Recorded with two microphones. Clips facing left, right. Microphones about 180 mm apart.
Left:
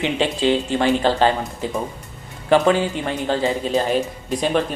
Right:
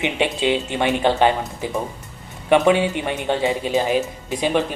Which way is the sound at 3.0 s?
15° right (ahead or behind).